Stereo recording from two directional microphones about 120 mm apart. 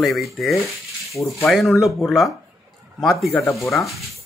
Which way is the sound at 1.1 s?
25° left (ahead or behind).